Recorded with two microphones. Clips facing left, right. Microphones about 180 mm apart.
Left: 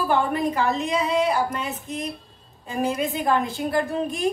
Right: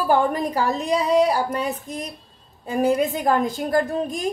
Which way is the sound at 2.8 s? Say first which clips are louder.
Right 4 dB; 40° right (ahead or behind).